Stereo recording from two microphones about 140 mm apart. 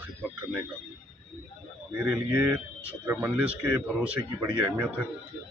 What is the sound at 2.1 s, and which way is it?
Speech, 20° right (ahead or behind).